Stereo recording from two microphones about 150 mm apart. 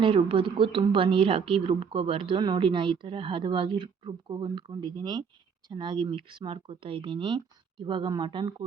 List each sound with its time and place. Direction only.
0.0 s speech: 35° right (ahead or behind)